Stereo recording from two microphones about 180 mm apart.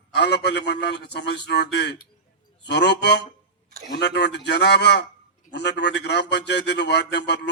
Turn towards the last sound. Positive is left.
turn(degrees=75)  # may be behind; listen again after turning